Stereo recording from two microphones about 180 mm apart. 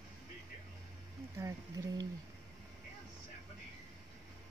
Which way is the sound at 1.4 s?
20° right (ahead or behind).